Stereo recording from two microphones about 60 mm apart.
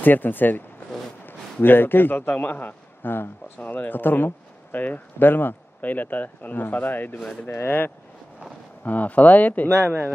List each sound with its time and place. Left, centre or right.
0.0 s a man's voice: left